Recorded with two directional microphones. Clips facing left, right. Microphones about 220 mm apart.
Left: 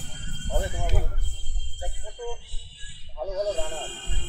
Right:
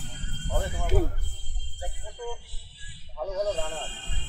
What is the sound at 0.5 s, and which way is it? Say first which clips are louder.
Music: left 1 dB; 15° left (ahead or behind).